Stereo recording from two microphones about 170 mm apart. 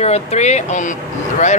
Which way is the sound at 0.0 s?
40° left (ahead or behind).